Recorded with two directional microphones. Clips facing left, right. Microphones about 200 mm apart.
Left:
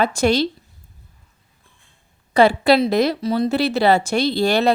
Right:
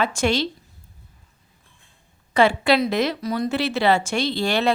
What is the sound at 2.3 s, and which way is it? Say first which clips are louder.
Speech: left 4 dB; 35° left (ahead or behind).